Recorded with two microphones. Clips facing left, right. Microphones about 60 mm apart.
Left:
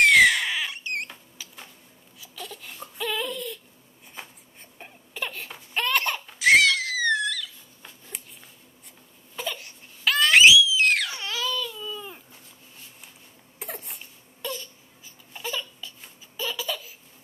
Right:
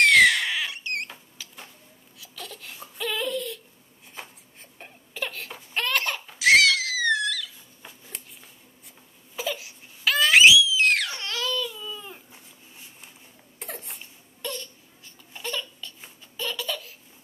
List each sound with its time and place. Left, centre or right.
0.0 s a sound: centre
2.1 s baby cry: centre
4.1 s crying: centre
9.3 s crying: centre
13.6 s crying: centre
16.3 s laughter: centre